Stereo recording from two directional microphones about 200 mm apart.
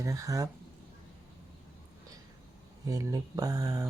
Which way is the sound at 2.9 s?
15° right (ahead or behind).